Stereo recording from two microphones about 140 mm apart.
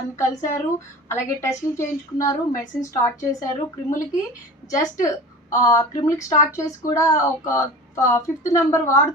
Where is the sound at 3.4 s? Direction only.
25° left (ahead or behind).